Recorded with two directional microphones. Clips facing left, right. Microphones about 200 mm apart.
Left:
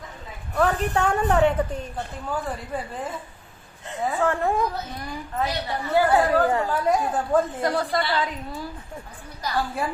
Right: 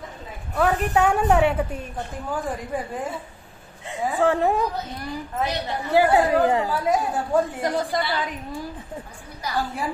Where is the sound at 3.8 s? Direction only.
15° right (ahead or behind).